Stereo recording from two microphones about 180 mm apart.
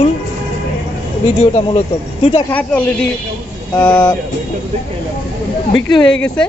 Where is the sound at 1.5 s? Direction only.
35° left (ahead or behind).